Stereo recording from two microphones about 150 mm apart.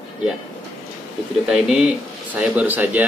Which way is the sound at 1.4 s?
5° right (ahead or behind).